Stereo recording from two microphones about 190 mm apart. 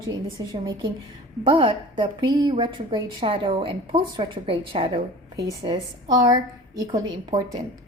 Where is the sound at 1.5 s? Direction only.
25° right (ahead or behind).